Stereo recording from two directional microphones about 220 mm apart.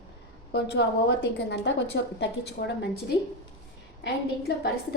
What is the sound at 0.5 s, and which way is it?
A woman's voice, 50° left (ahead or behind).